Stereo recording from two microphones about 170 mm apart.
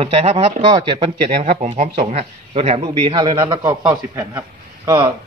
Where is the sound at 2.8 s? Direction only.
30° right (ahead or behind).